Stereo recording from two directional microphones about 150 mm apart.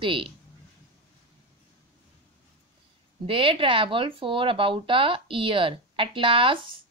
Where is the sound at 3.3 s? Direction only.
35° right (ahead or behind).